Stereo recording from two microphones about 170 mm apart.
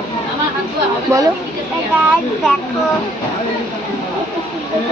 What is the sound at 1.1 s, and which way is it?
Speech, 15° right (ahead or behind).